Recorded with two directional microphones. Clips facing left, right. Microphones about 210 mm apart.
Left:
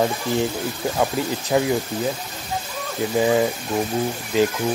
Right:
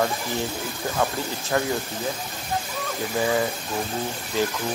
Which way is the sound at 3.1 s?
20° left (ahead or behind).